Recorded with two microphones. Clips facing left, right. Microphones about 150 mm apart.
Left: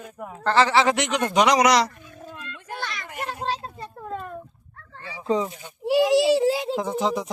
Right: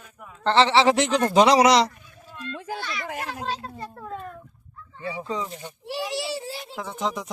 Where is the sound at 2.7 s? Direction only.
90° right.